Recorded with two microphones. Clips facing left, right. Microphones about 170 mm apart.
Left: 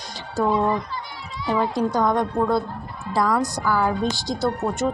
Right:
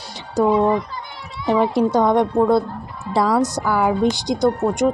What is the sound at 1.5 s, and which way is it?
A woman's voice, 20° right (ahead or behind).